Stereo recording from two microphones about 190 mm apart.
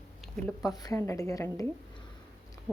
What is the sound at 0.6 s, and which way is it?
A woman's voice, 20° left (ahead or behind).